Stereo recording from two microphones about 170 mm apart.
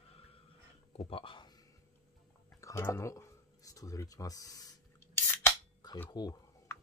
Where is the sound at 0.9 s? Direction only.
35° left (ahead or behind).